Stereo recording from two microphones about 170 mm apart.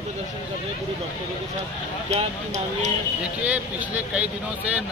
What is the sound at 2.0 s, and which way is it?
Speech, 40° right (ahead or behind).